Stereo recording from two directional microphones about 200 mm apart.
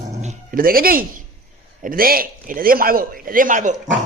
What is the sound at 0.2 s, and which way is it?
Dog, 40° right (ahead or behind).